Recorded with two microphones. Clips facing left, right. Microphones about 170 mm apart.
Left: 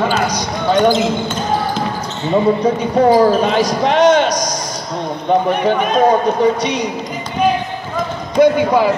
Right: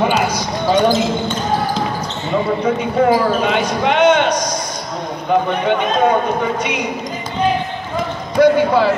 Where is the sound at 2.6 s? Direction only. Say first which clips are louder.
Left 2 dB; 35° left (ahead or behind).